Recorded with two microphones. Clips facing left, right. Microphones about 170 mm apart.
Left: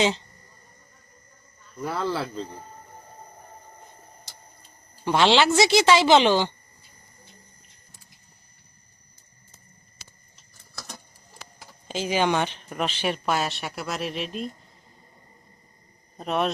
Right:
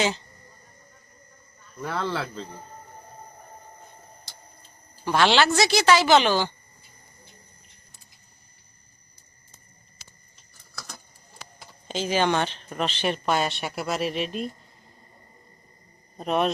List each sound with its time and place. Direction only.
1.8 s speech: 5° left (ahead or behind)
5.0 s a woman's voice: 20° left (ahead or behind)
11.9 s speech: 10° left (ahead or behind)
16.1 s speech: centre (ahead or behind)